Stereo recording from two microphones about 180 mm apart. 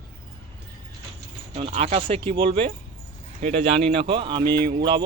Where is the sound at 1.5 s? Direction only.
30° right (ahead or behind).